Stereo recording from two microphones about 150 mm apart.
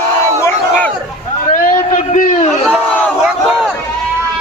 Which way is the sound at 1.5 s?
65° left (ahead or behind).